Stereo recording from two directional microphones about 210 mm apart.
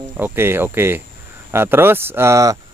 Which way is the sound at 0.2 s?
10° right (ahead or behind).